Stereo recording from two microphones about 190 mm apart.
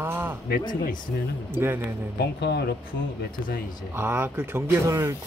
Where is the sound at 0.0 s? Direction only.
10° right (ahead or behind).